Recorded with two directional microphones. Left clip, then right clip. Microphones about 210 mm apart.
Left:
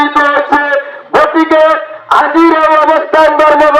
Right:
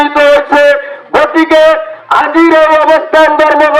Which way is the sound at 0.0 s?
40° right (ahead or behind).